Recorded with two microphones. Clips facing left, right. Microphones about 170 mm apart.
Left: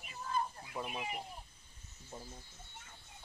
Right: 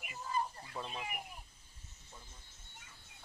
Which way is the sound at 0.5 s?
10° left (ahead or behind).